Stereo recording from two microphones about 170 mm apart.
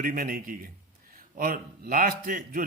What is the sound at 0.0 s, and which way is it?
A man's voice, 55° right (ahead or behind).